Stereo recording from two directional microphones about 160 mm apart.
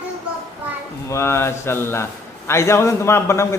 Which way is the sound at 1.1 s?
15° left (ahead or behind).